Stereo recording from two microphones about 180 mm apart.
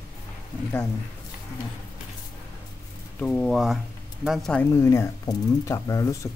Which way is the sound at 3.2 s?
10° left (ahead or behind).